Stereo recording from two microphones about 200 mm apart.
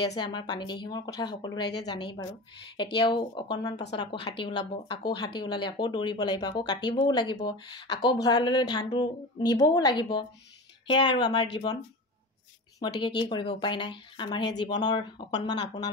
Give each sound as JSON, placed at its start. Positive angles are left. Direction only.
{"t": 0.0, "sound": "speech", "side_deg": 20}
{"t": 12.8, "sound": "speech", "side_deg": 20}